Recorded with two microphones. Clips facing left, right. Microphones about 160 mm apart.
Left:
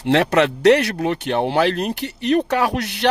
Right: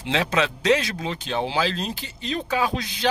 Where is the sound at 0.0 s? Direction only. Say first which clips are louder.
Left 7 dB; 65° left (ahead or behind).